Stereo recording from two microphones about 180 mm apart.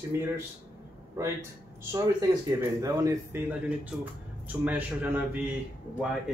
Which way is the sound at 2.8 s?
20° right (ahead or behind).